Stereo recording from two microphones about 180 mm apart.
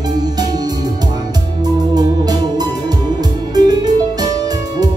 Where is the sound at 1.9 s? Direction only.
20° right (ahead or behind).